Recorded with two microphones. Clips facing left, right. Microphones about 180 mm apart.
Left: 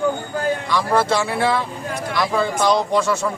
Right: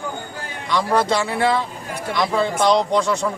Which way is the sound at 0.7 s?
20° right (ahead or behind).